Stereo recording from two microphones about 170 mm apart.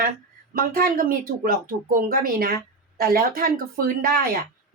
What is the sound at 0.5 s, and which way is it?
A woman's voice, 60° right (ahead or behind).